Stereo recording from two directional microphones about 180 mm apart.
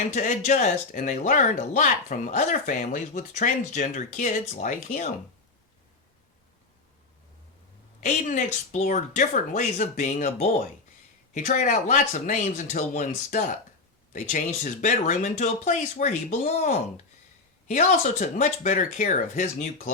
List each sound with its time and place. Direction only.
0.1 s speech: 45° left (ahead or behind)
8.0 s speech: 45° left (ahead or behind)
17.7 s speech: 40° left (ahead or behind)